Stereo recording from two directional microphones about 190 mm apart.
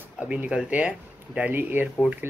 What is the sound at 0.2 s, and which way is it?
Speech, 5° right (ahead or behind).